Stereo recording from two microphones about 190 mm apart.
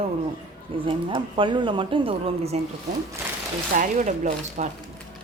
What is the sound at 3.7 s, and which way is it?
Speech, 45° right (ahead or behind).